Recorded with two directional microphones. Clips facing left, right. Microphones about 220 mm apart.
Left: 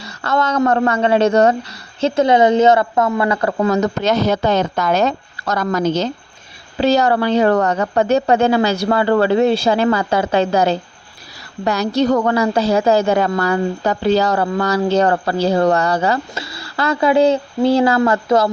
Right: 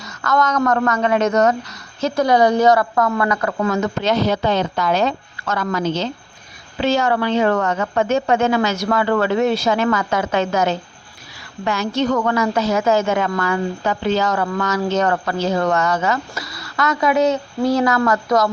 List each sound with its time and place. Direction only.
0.0 s a woman's voice: 30° left (ahead or behind)